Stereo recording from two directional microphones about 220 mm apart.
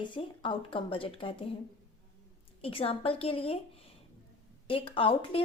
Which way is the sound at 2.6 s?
25° left (ahead or behind).